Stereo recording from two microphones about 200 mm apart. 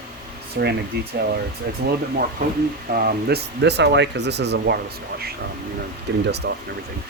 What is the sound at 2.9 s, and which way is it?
Speech, 45° right (ahead or behind).